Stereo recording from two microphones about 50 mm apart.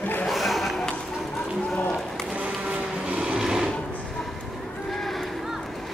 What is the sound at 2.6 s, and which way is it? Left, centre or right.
Printer, right.